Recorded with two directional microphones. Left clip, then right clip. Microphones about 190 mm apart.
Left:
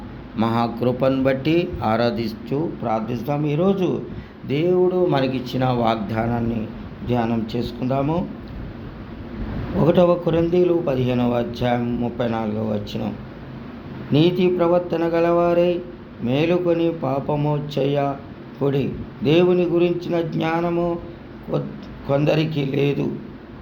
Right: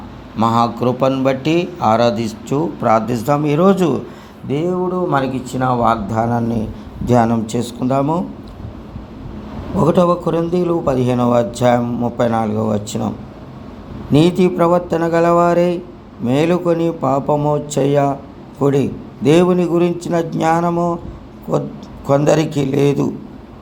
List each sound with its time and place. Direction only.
0.3 s a man's voice: 5° right (ahead or behind)
9.7 s a man's voice: 10° right (ahead or behind); by 13.1 s 25° right (ahead or behind)
14.1 s a man's voice: 25° right (ahead or behind)